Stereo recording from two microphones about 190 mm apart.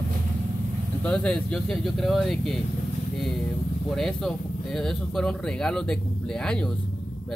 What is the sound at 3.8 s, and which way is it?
Speech, centre (ahead or behind).